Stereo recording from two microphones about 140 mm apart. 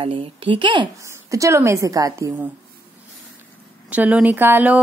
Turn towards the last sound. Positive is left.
turn(degrees=-15)  # may be behind; listen again after turning